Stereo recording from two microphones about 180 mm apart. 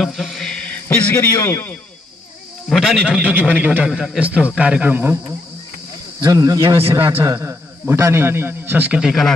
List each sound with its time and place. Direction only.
0.0 s a man's voice: centre (ahead or behind)
2.7 s a man's voice: centre (ahead or behind)
6.2 s a man's voice: 20° right (ahead or behind); by 9.3 s centre (ahead or behind)